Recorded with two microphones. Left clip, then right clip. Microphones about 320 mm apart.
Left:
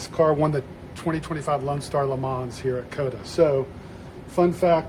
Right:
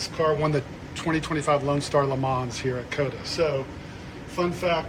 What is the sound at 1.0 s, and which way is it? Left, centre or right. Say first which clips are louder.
Speech: right 2 dB; centre.